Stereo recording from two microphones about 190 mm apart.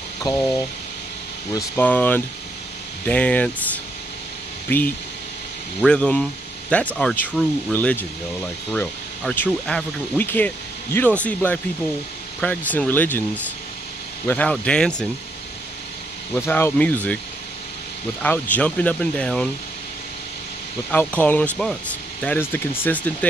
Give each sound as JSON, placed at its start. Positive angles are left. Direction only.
{"t": 0.3, "sound": "speech", "side_deg": 20}
{"t": 1.5, "sound": "speech", "side_deg": 15}
{"t": 9.2, "sound": "speech", "side_deg": 5}
{"t": 14.2, "sound": "speech", "side_deg": 10}
{"t": 16.3, "sound": "speech", "side_deg": 10}
{"t": 18.2, "sound": "speech", "side_deg": 10}
{"t": 20.9, "sound": "speech", "side_deg": 10}